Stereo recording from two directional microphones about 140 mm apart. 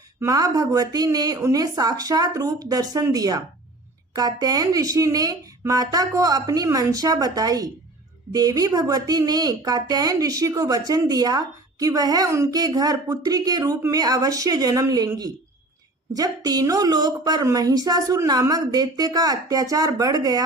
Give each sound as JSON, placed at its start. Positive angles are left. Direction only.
{"t": 0.2, "sound": "a woman's voice", "side_deg": -25}